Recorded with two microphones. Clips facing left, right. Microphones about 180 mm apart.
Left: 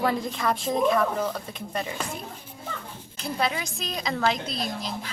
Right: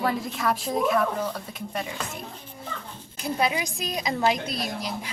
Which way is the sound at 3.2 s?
10° right (ahead or behind).